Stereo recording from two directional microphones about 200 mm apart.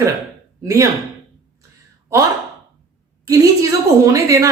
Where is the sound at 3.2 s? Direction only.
15° right (ahead or behind).